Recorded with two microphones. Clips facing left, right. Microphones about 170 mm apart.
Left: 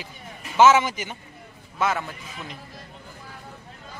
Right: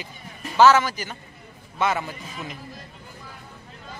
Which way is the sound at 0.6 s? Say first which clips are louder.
Even; 20° left (ahead or behind).